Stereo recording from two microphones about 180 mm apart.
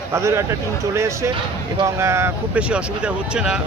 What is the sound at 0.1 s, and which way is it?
Speech, 15° right (ahead or behind).